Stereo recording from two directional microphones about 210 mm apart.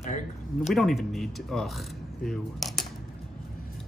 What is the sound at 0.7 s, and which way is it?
Speech, centre (ahead or behind).